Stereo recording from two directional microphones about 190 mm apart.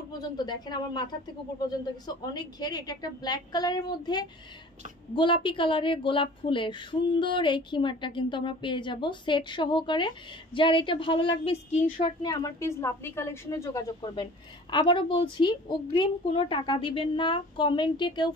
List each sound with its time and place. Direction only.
0.4 s a woman's voice: 20° left (ahead or behind)
2.0 s a woman's voice: 20° left (ahead or behind)